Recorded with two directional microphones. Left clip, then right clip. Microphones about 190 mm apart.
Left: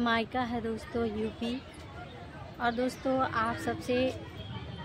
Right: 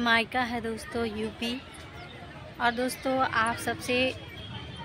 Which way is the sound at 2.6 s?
Centre (ahead or behind).